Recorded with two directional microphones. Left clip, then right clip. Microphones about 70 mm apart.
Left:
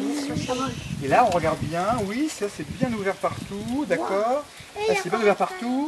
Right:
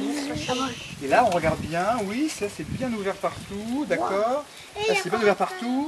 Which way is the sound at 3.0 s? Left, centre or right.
Centre.